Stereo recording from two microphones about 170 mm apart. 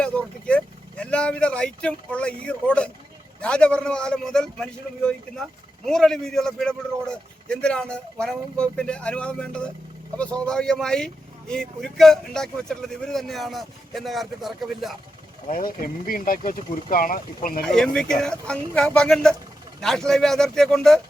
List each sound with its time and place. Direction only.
0.0 s a man's voice: 5° left (ahead or behind)
15.5 s speech: 55° left (ahead or behind)
17.7 s a man's voice: 5° left (ahead or behind)